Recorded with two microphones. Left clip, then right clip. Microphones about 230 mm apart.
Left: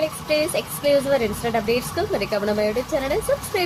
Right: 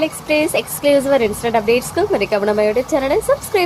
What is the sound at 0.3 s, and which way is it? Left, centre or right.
Speech, centre.